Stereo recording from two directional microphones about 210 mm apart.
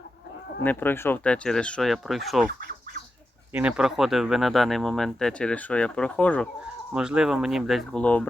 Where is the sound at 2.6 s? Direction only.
45° right (ahead or behind).